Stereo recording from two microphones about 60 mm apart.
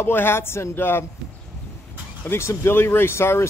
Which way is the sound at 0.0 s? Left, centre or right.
Left.